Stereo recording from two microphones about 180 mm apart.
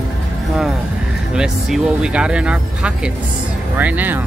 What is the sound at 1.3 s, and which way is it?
Speech, 5° right (ahead or behind).